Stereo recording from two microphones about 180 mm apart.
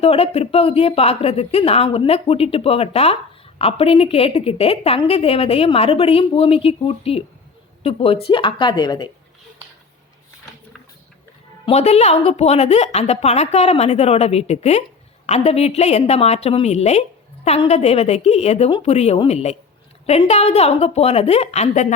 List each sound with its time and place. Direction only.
0.0 s a woman's voice: 35° left (ahead or behind)
11.6 s a woman's voice: 35° left (ahead or behind)